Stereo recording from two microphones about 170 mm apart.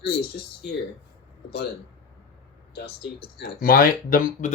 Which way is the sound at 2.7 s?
75° left (ahead or behind).